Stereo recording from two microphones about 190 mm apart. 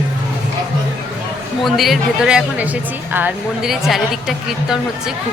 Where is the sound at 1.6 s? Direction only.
Centre (ahead or behind).